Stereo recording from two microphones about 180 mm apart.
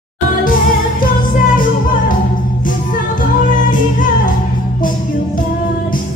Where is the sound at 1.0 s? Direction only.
50° left (ahead or behind).